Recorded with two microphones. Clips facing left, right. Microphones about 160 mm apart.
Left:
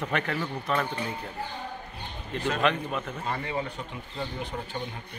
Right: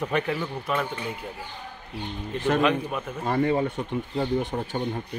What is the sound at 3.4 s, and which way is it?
Speech, 40° right (ahead or behind).